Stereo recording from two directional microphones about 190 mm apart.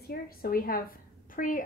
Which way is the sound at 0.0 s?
55° left (ahead or behind).